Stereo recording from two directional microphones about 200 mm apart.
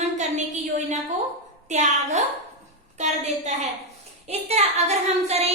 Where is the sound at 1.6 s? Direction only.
35° right (ahead or behind).